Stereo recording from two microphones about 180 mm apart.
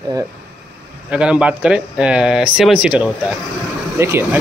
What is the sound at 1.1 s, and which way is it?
Speech, 5° right (ahead or behind).